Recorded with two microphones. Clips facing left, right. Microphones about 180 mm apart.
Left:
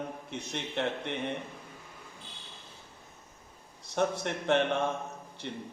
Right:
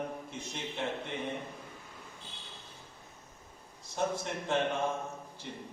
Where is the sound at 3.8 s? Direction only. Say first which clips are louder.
Left 4 dB; 70° left (ahead or behind).